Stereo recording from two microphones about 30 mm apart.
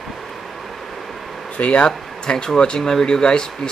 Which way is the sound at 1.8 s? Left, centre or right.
Left.